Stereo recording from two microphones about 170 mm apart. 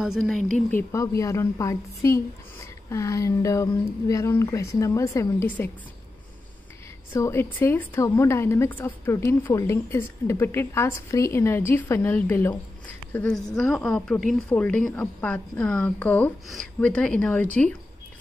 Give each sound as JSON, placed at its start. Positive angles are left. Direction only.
{"t": 0.0, "sound": "speech", "side_deg": 0}
{"t": 0.7, "sound": "a woman's voice", "side_deg": 15}
{"t": 7.2, "sound": "a woman's voice", "side_deg": 15}